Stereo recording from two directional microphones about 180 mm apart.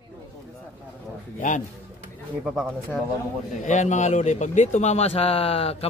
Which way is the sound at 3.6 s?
40° left (ahead or behind).